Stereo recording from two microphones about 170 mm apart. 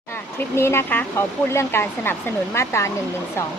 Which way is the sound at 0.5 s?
15° left (ahead or behind).